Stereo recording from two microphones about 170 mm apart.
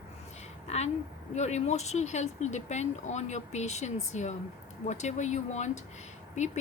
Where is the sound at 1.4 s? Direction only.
40° left (ahead or behind).